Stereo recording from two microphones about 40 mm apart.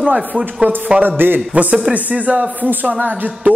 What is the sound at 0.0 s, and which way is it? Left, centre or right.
Speech, right.